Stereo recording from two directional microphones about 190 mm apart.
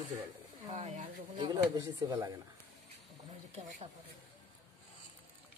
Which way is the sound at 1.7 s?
20° right (ahead or behind).